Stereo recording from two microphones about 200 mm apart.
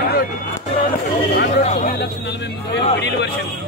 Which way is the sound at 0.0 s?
50° left (ahead or behind).